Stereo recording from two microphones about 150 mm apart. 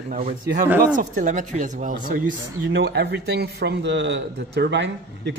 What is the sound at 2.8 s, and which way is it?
Speech, 90° right.